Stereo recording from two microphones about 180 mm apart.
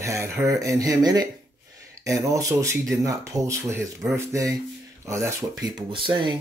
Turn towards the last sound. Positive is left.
turn(degrees=-25)  # may be behind; listen again after turning